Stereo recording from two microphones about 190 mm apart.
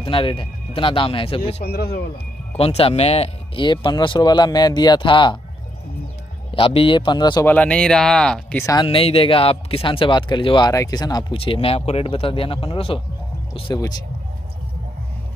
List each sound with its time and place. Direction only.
0.0 s speech: 25° left (ahead or behind)
1.6 s speech: 55° left (ahead or behind)
2.5 s speech: 30° left (ahead or behind)
6.5 s speech: 30° left (ahead or behind)
7.4 s speech: 5° left (ahead or behind)
8.6 s speech: 25° left (ahead or behind)